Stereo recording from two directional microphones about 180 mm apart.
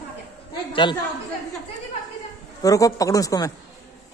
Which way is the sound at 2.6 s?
20° left (ahead or behind).